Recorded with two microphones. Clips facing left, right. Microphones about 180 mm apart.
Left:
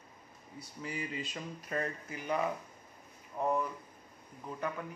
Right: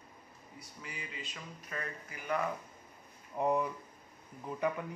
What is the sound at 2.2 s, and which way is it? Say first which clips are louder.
Speech: left 1 dB; 20° left (ahead or behind).